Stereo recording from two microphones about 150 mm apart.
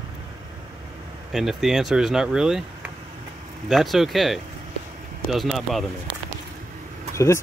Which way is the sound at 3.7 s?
Centre (ahead or behind).